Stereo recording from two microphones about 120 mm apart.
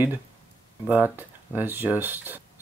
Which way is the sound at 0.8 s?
15° right (ahead or behind).